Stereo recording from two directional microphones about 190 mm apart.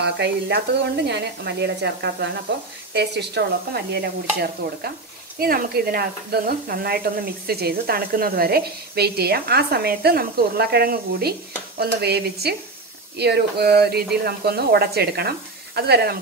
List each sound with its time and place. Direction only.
0.0 s speech: 60° right (ahead or behind)